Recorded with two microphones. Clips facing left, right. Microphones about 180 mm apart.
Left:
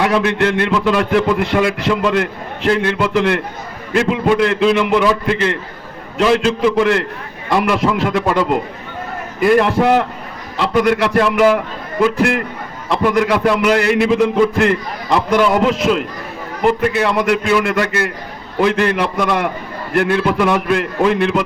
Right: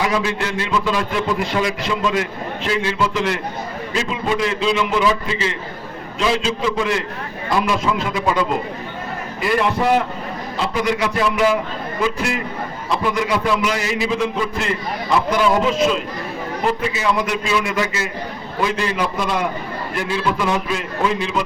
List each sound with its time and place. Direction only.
0.0 s a man's voice: 60° left (ahead or behind)
9.6 s a man's voice: 55° left (ahead or behind)
15.6 s a man's voice: 65° left (ahead or behind)